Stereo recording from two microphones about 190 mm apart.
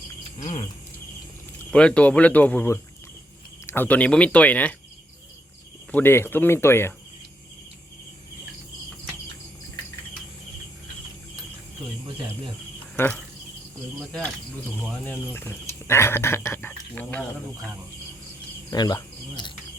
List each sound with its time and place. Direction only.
1.7 s speech: 5° left (ahead or behind)
5.9 s speech: 10° left (ahead or behind)
13.0 s speech: 10° left (ahead or behind)
15.3 s speech: 15° left (ahead or behind)
18.7 s speech: 20° left (ahead or behind)